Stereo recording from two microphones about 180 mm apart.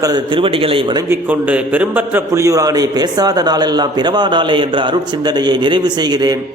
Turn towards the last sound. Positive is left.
turn(degrees=-20)  # may be behind; listen again after turning